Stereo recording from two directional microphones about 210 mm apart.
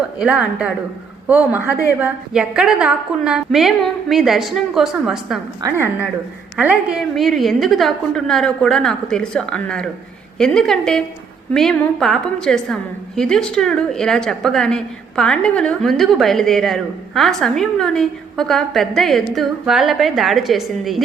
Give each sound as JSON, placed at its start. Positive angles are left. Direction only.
{"t": 0.2, "sound": "a woman's voice", "side_deg": -5}
{"t": 6.6, "sound": "a woman's voice", "side_deg": -5}